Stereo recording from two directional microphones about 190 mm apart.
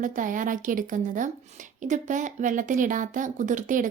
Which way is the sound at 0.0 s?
45° right (ahead or behind).